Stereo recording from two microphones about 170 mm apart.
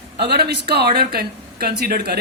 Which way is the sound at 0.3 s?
70° right (ahead or behind).